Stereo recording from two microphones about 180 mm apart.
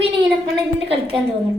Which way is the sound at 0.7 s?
30° right (ahead or behind).